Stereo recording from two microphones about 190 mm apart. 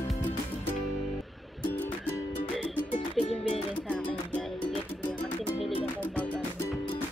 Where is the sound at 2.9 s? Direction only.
30° left (ahead or behind).